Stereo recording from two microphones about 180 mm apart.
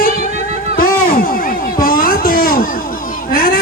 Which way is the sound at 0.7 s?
55° left (ahead or behind).